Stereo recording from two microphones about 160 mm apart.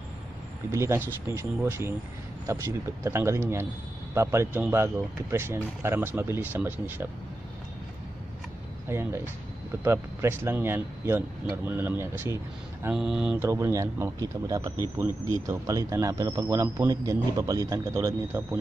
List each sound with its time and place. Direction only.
0.7 s speech: 15° right (ahead or behind)
8.8 s speech: 15° right (ahead or behind)
12.9 s speech: 5° right (ahead or behind)
13.4 s speech: 15° right (ahead or behind)